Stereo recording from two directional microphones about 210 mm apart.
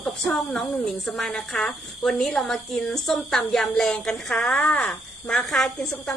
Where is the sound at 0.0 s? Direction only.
Centre (ahead or behind).